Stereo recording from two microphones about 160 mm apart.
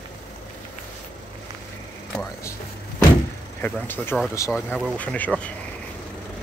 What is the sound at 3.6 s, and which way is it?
Speech, 10° left (ahead or behind).